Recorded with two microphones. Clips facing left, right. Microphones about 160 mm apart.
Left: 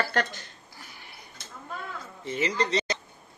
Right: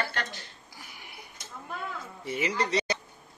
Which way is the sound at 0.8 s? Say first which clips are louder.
Right 1 dB; 15° right (ahead or behind).